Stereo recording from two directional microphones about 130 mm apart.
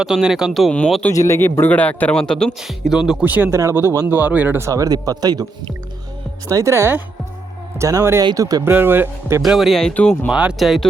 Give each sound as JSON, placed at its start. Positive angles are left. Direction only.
{"t": 0.0, "sound": "a man's voice", "side_deg": -5}
{"t": 1.1, "sound": "a man's voice", "side_deg": 25}
{"t": 6.5, "sound": "a man's voice", "side_deg": -25}
{"t": 8.7, "sound": "speech", "side_deg": -15}
{"t": 9.4, "sound": "a man's voice", "side_deg": 0}
{"t": 10.2, "sound": "a man's voice", "side_deg": -5}